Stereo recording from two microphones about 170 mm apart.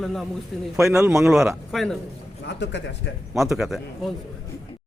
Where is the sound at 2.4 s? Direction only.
90° left.